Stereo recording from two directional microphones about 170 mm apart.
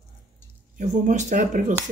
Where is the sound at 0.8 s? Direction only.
45° right (ahead or behind).